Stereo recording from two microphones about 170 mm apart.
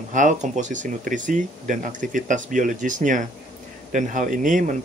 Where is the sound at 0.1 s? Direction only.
45° right (ahead or behind).